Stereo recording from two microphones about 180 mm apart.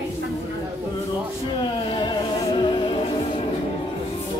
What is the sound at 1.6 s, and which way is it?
Music, 25° left (ahead or behind).